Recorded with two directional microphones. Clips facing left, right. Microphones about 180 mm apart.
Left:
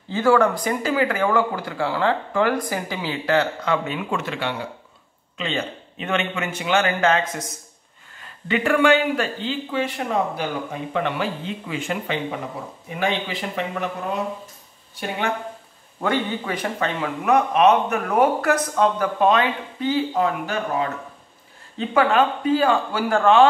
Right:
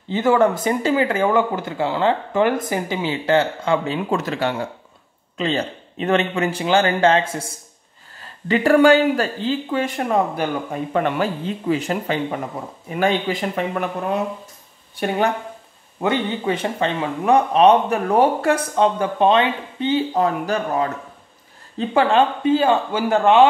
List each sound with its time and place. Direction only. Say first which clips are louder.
0.1 s speech: right 1 dB; 20° right (ahead or behind); by 13.8 s 45° right (ahead or behind)
16.0 s speech: right 2 dB; 20° right (ahead or behind)
21.7 s speech: right 2 dB; 30° right (ahead or behind)